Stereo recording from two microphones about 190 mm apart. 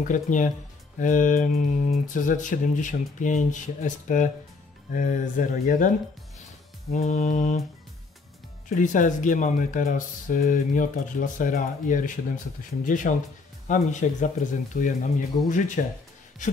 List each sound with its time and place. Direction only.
0.1 s speech: 40° left (ahead or behind)
8.6 s speech: 40° left (ahead or behind)